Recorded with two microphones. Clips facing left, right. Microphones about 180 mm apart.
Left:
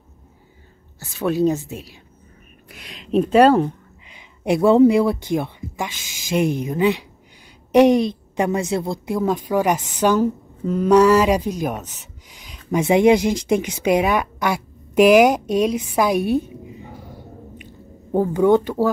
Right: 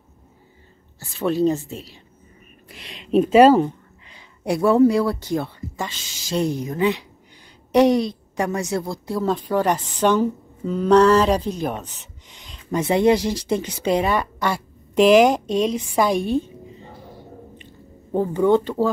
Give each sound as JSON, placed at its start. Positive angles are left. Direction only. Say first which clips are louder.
{"t": 0.9, "sound": "a woman's voice", "louder": "left 1 dB", "side_deg": 5}
{"t": 2.7, "sound": "a sound", "louder": "right 1 dB", "side_deg": 0}
{"t": 3.6, "sound": "a woman's voice", "louder": "left 1 dB", "side_deg": 20}
{"t": 12.4, "sound": "a sound", "louder": "left 3 dB", "side_deg": 5}
{"t": 12.8, "sound": "speech", "louder": "left 3 dB", "side_deg": 15}
{"t": 18.1, "sound": "speech", "louder": "left 2 dB", "side_deg": 10}